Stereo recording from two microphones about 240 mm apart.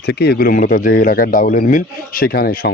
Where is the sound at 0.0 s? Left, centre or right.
Left.